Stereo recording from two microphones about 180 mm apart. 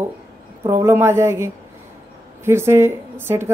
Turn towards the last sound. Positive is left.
turn(degrees=-15)  # may be behind; listen again after turning